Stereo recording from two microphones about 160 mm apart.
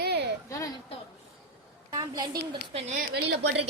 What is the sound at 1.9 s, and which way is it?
Speech, 25° right (ahead or behind).